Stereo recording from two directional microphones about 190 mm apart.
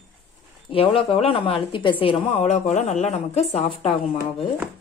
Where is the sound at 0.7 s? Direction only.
30° left (ahead or behind).